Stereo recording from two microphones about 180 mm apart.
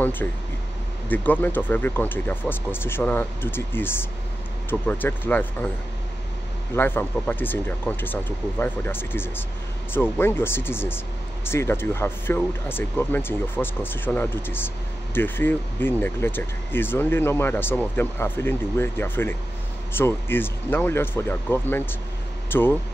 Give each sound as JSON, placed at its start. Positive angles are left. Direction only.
{"t": 0.0, "sound": "speech", "side_deg": 10}
{"t": 6.7, "sound": "speech", "side_deg": 10}